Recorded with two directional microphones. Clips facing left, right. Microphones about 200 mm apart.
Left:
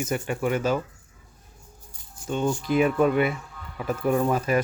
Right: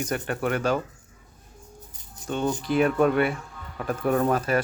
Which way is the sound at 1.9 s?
20° right (ahead or behind).